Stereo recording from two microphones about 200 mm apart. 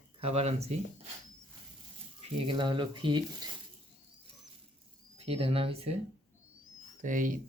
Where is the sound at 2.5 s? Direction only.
25° right (ahead or behind).